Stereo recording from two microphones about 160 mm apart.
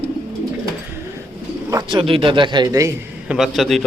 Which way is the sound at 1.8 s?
30° right (ahead or behind).